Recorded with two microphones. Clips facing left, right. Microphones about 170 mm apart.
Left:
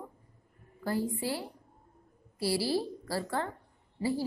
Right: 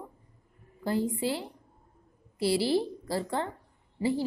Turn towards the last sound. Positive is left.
turn(degrees=-20)  # may be behind; listen again after turning